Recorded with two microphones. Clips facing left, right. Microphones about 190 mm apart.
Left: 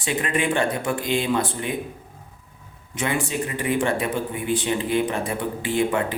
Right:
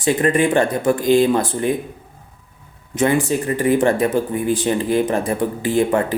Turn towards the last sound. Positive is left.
turn(degrees=-40)  # may be behind; listen again after turning